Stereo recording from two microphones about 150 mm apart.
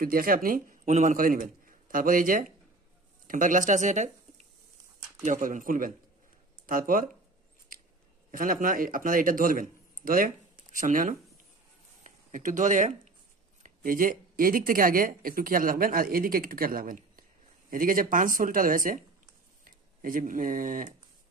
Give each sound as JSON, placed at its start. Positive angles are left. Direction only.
{"t": 0.0, "sound": "a man's voice", "side_deg": -70}
{"t": 8.3, "sound": "speech", "side_deg": -65}